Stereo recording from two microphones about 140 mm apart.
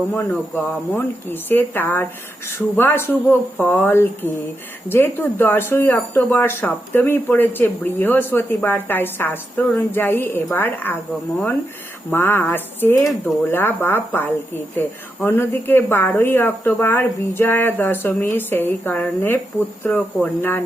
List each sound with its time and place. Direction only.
0.1 s speech: 10° left (ahead or behind)
12.1 s speech: 15° left (ahead or behind)